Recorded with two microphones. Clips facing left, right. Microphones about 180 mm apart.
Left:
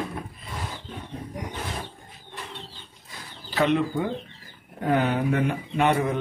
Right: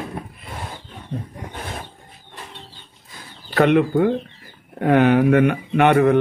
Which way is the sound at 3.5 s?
60° right (ahead or behind).